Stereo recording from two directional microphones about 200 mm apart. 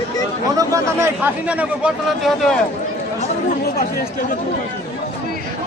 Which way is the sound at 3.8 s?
50° left (ahead or behind).